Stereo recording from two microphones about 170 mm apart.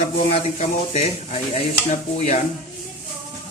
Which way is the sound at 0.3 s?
40° left (ahead or behind).